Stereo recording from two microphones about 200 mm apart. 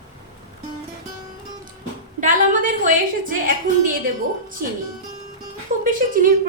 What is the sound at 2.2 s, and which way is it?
A woman's voice, 40° right (ahead or behind).